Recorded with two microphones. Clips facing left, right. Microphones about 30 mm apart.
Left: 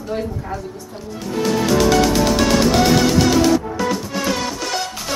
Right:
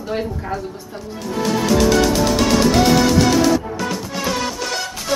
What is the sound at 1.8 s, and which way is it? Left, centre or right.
Music, centre.